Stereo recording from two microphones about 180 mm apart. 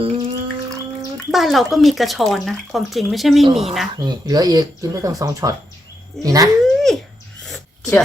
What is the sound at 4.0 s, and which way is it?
Speech, 20° right (ahead or behind).